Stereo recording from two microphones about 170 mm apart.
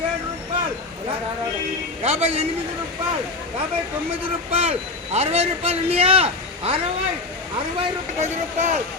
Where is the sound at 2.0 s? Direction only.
40° right (ahead or behind).